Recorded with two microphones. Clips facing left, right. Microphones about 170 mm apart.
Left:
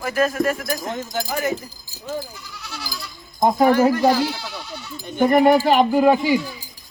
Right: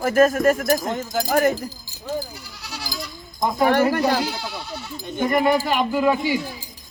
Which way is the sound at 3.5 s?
45° left (ahead or behind).